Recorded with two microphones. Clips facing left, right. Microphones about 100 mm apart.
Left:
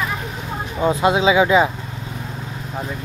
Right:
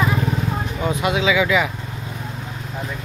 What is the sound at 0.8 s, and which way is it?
Speech, 30° left (ahead or behind).